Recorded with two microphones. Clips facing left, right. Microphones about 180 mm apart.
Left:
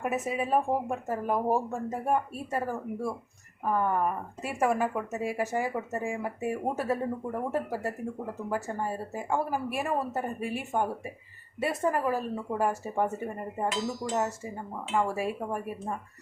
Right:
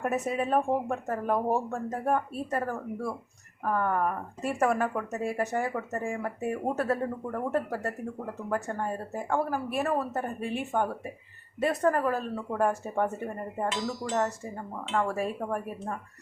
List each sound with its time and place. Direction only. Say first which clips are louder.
0.0 s speech: right 1 dB; 5° left (ahead or behind)
5.7 s speech: even; 20° left (ahead or behind)
6.1 s speech: even; 5° left (ahead or behind)